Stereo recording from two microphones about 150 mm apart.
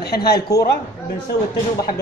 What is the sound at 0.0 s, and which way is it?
Speech, 90° left.